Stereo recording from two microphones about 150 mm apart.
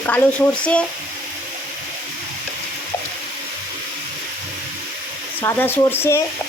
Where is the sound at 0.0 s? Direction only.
10° left (ahead or behind).